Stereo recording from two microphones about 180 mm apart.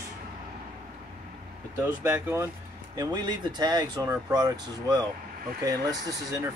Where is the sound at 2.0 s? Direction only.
15° right (ahead or behind).